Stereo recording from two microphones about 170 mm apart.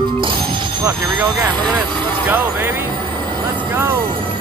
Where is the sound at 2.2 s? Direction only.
10° right (ahead or behind).